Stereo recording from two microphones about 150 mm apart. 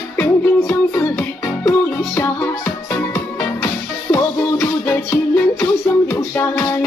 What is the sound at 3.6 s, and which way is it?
Music, 15° left (ahead or behind).